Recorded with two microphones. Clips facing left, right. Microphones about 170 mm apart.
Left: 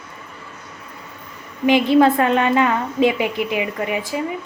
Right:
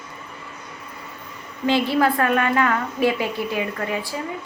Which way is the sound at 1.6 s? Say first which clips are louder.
Left 5 dB; 20° left (ahead or behind).